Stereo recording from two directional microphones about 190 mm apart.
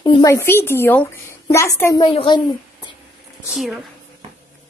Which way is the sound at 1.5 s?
15° left (ahead or behind).